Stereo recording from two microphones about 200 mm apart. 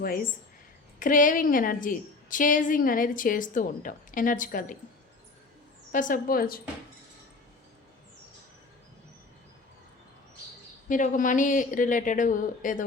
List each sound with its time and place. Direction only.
0.9 s a woman's voice: 40° left (ahead or behind)
5.9 s a woman's voice: 40° left (ahead or behind)
10.8 s a woman's voice: 40° left (ahead or behind)